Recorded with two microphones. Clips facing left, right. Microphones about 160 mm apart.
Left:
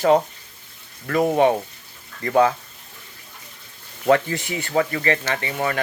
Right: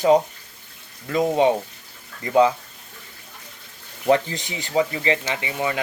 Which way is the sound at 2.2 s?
15° right (ahead or behind).